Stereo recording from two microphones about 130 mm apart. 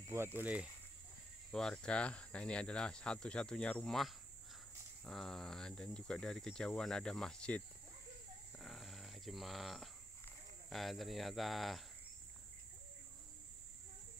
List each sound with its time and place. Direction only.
0.0 s cricket: 20° right (ahead or behind)
0.4 s speech: 10° right (ahead or behind)
1.5 s speech: 5° left (ahead or behind)
8.5 s a sound: centre (ahead or behind)
10.7 s speech: centre (ahead or behind)